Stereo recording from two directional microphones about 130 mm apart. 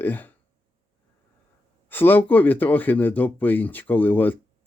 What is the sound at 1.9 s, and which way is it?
Speech, 15° left (ahead or behind).